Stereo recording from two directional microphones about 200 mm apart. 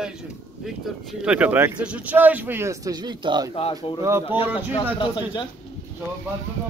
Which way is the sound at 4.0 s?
15° right (ahead or behind).